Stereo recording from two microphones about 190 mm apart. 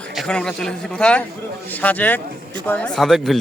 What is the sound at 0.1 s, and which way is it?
A man's voice, centre (ahead or behind).